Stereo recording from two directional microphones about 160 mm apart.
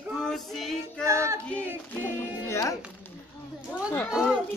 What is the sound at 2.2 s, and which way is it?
Speech, 20° left (ahead or behind).